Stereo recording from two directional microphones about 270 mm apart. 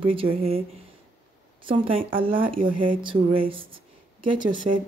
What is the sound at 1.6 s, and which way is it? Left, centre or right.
A woman's voice, centre.